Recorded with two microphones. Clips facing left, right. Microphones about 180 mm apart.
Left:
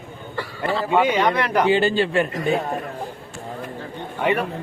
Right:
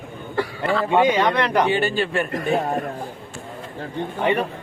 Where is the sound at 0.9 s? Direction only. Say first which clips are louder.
Right 1 dB; 5° left (ahead or behind).